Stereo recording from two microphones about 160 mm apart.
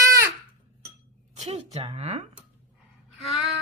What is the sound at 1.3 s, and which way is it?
Dishes, 40° right (ahead or behind).